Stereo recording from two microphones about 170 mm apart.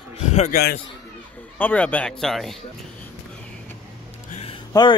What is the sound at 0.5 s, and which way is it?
Speech, 70° left (ahead or behind).